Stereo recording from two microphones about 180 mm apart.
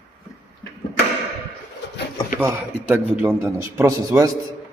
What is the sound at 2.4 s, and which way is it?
A man's voice, 10° right (ahead or behind).